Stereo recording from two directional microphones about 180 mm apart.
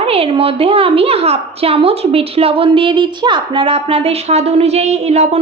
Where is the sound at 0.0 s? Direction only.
30° right (ahead or behind).